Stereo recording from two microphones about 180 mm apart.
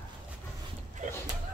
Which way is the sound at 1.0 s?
45° right (ahead or behind).